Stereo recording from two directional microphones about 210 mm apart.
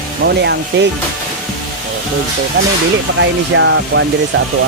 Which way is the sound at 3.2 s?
60° right (ahead or behind).